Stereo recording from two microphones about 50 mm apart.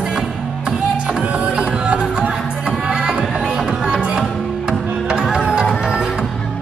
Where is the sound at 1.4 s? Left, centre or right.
Right.